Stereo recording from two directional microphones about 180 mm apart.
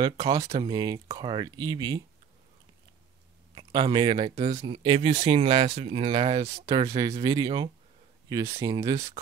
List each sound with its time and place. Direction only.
0.0 s speech: 20° right (ahead or behind)
3.5 s speech: 25° right (ahead or behind)